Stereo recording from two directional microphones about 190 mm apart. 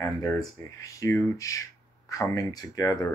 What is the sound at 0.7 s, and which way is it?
Speech, 15° left (ahead or behind).